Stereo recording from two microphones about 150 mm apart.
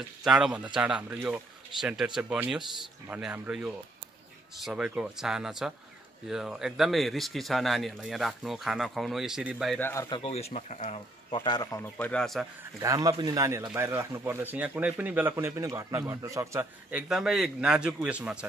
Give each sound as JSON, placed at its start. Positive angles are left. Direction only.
{"t": 0.2, "sound": "a man's voice", "side_deg": -5}
{"t": 9.8, "sound": "speech", "side_deg": 15}
{"t": 10.0, "sound": "speech", "side_deg": 35}
{"t": 12.7, "sound": "a man's voice", "side_deg": -25}
{"t": 16.9, "sound": "a man's voice", "side_deg": -5}